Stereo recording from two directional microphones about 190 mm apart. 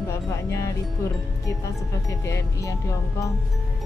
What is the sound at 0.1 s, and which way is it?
Music, 15° left (ahead or behind).